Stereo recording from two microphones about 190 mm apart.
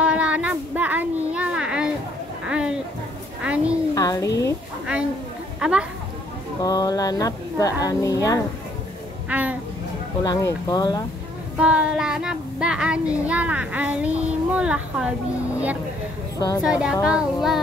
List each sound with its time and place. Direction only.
0.0 s child singing: 5° right (ahead or behind)
2.4 s a sound: 5° right (ahead or behind)
3.9 s a sound: 15° left (ahead or behind)
5.6 s speech: 5° right (ahead or behind)
6.6 s speech: 20° left (ahead or behind)
9.3 s speech: 10° right (ahead or behind)
10.2 s speech: 20° left (ahead or behind)
11.5 s child singing: 5° right (ahead or behind)
16.3 s a woman's voice: 20° left (ahead or behind)
16.6 s a child's voice: 5° right (ahead or behind)